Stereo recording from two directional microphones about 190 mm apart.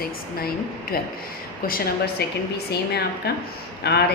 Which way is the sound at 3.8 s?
60° left (ahead or behind).